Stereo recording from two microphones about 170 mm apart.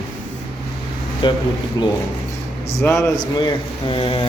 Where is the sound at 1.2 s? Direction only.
30° left (ahead or behind).